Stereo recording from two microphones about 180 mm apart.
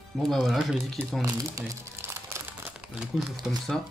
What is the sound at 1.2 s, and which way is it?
Crumpling, 15° right (ahead or behind).